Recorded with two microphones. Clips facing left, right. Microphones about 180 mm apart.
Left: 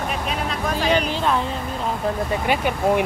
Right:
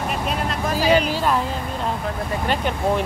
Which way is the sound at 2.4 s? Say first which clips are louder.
Left 1 dB; 10° left (ahead or behind).